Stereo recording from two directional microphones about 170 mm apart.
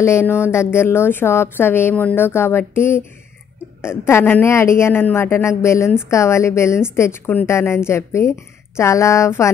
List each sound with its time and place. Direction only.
0.0 s speech: 15° left (ahead or behind)